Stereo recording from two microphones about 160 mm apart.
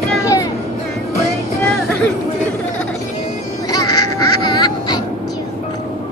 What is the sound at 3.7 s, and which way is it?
Quack, 25° left (ahead or behind).